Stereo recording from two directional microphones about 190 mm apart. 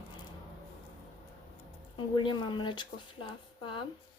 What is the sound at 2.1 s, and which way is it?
A woman's voice, 25° left (ahead or behind).